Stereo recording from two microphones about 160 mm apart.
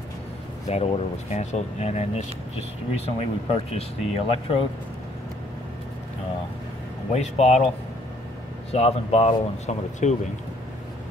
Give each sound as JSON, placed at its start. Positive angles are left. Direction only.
{"t": 0.7, "sound": "speech", "side_deg": 40}
{"t": 7.1, "sound": "speech", "side_deg": 45}
{"t": 8.7, "sound": "speech", "side_deg": 40}